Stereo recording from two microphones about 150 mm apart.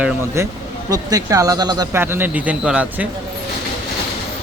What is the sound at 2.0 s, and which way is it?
Speech, 15° right (ahead or behind).